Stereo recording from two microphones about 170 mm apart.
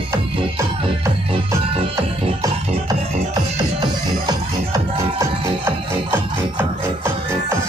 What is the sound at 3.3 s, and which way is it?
Music, 25° right (ahead or behind).